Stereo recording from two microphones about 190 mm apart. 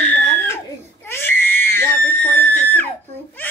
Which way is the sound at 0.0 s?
10° left (ahead or behind).